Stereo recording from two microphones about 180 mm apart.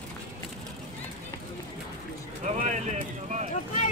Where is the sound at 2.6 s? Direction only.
40° right (ahead or behind).